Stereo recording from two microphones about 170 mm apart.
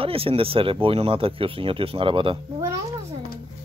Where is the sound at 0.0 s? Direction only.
35° right (ahead or behind).